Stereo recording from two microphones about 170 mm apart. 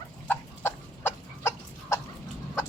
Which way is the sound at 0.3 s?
15° left (ahead or behind).